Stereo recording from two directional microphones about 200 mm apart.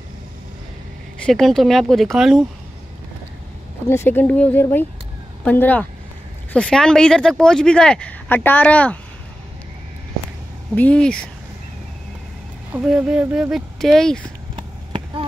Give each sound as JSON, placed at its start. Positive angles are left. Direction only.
{"t": 1.2, "sound": "speech", "side_deg": 0}
{"t": 3.9, "sound": "speech", "side_deg": 10}
{"t": 10.7, "sound": "speech", "side_deg": 5}
{"t": 12.7, "sound": "speech", "side_deg": -5}
{"t": 14.5, "sound": "clip-clop", "side_deg": -25}